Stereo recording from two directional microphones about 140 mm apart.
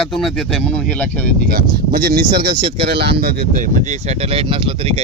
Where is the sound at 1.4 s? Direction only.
90° right.